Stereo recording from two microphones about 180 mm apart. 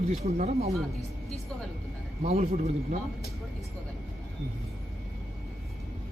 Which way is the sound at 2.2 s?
35° right (ahead or behind).